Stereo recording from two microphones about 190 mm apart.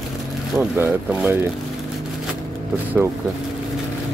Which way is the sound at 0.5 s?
5° right (ahead or behind).